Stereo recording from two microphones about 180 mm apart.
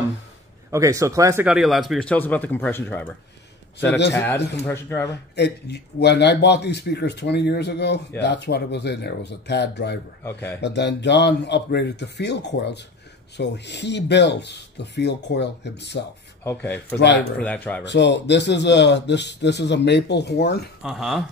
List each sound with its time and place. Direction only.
0.7 s a man's voice: 15° right (ahead or behind)
1.4 s speech: 5° right (ahead or behind)
3.8 s a man's voice: 70° left (ahead or behind)
4.6 s speech: 10° left (ahead or behind)
5.3 s a man's voice: 70° left (ahead or behind)
10.2 s speech: 10° left (ahead or behind)
10.6 s a man's voice: 75° left (ahead or behind)
16.4 s speech: 10° left (ahead or behind)
17.8 s a man's voice: 75° left (ahead or behind)
20.8 s speech: centre (ahead or behind)